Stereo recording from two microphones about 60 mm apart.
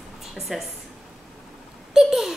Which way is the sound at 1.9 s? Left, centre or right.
Centre.